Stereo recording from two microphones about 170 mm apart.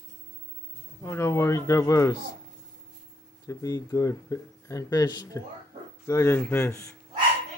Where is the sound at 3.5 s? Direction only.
20° left (ahead or behind).